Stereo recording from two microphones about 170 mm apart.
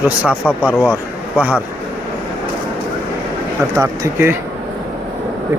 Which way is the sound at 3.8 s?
15° right (ahead or behind).